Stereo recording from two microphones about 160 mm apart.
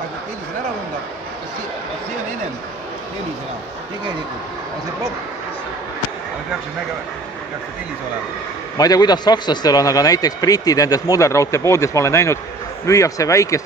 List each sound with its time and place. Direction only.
8.7 s a man's voice: 25° left (ahead or behind)